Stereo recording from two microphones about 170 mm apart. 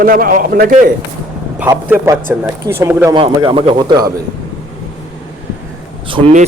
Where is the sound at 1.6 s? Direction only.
15° right (ahead or behind).